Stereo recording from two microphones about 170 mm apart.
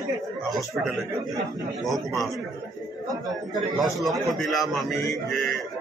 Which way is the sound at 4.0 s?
Centre (ahead or behind).